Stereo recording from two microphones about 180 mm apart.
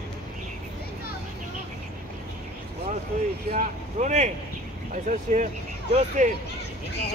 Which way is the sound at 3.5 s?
45° right (ahead or behind).